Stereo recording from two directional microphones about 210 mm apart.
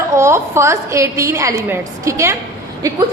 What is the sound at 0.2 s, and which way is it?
A woman's voice, 15° right (ahead or behind).